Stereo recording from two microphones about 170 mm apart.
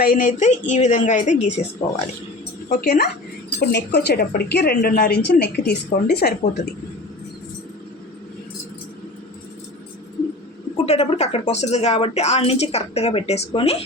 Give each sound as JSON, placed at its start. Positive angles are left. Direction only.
{"t": 0.0, "sound": "speech", "side_deg": 55}
{"t": 2.6, "sound": "a woman's voice", "side_deg": 60}
{"t": 3.7, "sound": "a woman's voice", "side_deg": 80}
{"t": 10.8, "sound": "a woman's voice", "side_deg": 40}